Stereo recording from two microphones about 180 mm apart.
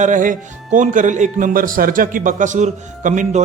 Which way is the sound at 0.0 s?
45° right (ahead or behind).